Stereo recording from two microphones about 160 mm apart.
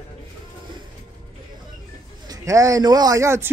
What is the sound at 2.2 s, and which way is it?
Speech, 20° right (ahead or behind).